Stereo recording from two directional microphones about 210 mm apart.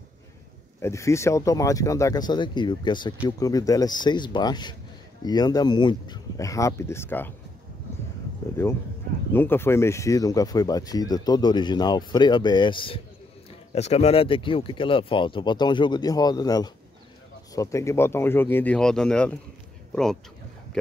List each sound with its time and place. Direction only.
0.7 s speech: 15° left (ahead or behind)
9.3 s speech: 10° left (ahead or behind)